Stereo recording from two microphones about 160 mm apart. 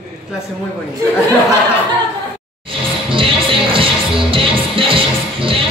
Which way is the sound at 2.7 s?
35° right (ahead or behind).